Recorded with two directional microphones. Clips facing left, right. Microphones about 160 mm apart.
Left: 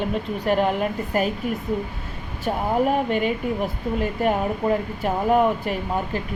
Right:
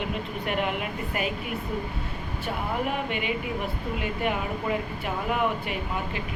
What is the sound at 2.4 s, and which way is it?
A woman's voice, 40° left (ahead or behind).